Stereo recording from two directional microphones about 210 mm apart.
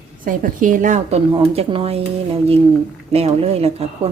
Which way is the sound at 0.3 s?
40° right (ahead or behind).